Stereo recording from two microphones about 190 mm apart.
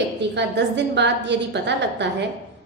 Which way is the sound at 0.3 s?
65° right (ahead or behind).